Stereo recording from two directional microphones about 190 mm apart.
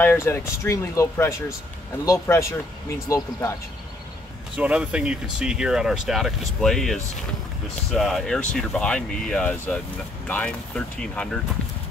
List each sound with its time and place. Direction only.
0.0 s speech: 10° left (ahead or behind)
4.6 s speech: 5° right (ahead or behind)